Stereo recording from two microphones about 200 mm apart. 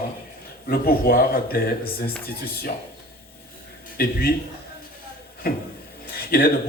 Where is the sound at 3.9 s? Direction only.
50° left (ahead or behind).